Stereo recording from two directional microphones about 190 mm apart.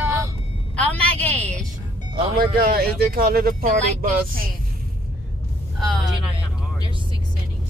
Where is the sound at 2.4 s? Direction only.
50° right (ahead or behind).